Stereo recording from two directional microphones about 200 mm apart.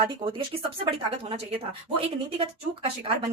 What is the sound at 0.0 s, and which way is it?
Speech, 25° right (ahead or behind).